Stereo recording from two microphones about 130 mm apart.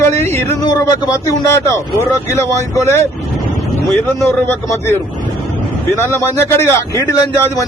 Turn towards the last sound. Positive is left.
turn(degrees=20)  # may be behind; listen again after turning